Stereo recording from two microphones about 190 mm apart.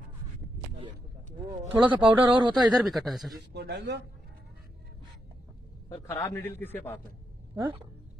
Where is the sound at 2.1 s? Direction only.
10° right (ahead or behind).